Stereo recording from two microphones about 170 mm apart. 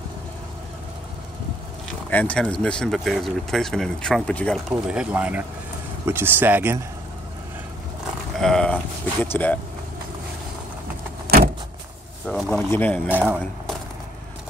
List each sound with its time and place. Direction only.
2.0 s speech: 10° left (ahead or behind)
4.8 s speech: 5° right (ahead or behind)
8.4 s a sound: 5° left (ahead or behind)
9.2 s speech: 10° left (ahead or behind)
11.2 s vehicle: 65° right (ahead or behind)
12.3 s speech: 5° left (ahead or behind)
13.1 s speech: 10° right (ahead or behind)